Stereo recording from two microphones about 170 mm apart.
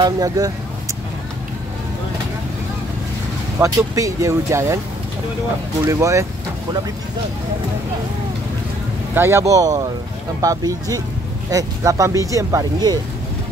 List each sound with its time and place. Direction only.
0.0 s speech: 20° right (ahead or behind)
3.5 s speech: 20° right (ahead or behind)
5.9 s speech: 15° right (ahead or behind)
9.1 s speech: 15° right (ahead or behind)